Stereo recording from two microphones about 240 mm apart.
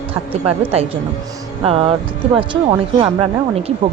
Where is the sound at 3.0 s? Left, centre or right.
Right.